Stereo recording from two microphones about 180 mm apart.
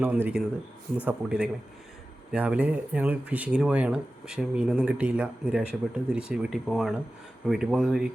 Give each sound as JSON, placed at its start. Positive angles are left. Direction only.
{"t": 0.0, "sound": "speech", "side_deg": -10}